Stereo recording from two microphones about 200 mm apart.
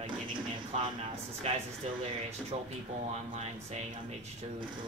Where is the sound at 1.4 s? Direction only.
30° right (ahead or behind).